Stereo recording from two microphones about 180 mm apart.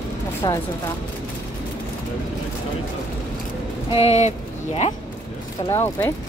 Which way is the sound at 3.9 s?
35° left (ahead or behind).